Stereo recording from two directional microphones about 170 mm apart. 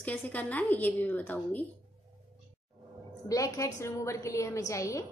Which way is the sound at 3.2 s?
20° left (ahead or behind).